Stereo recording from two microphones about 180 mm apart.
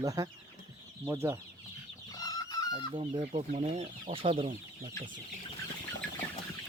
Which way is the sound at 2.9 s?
30° right (ahead or behind).